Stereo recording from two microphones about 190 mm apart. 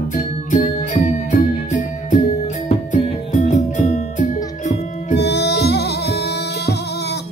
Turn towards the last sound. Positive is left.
turn(degrees=60)  # may be behind; listen again after turning